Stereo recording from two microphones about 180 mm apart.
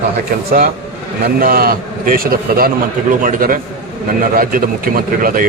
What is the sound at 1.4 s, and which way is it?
A man's voice, 55° right (ahead or behind).